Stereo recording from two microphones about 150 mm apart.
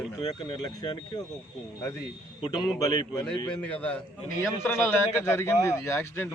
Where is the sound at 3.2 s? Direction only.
10° left (ahead or behind).